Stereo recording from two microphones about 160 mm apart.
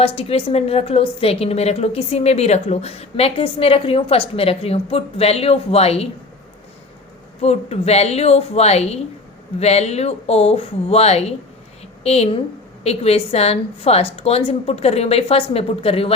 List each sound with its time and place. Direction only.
0.0 s a woman's voice: 35° left (ahead or behind)
7.4 s a woman's voice: 40° left (ahead or behind)